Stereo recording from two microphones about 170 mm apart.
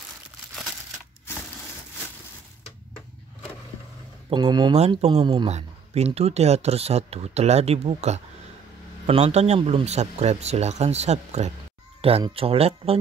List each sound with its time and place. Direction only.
4.3 s speech: 25° right (ahead or behind)
4.7 s speech: 40° right (ahead or behind)
5.1 s speech: 25° right (ahead or behind)
5.5 s speech: 40° right (ahead or behind)